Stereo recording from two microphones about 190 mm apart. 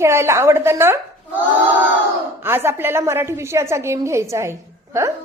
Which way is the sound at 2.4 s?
10° right (ahead or behind).